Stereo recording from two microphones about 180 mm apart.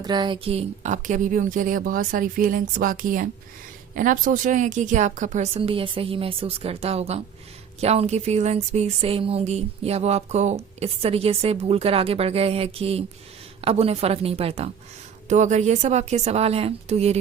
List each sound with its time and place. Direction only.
0.0 s a woman's voice: 25° right (ahead or behind); by 5.5 s 45° right (ahead or behind)
5.5 s speech: 30° right (ahead or behind)